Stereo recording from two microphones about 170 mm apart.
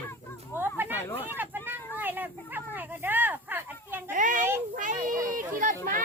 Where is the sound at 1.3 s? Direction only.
10° right (ahead or behind).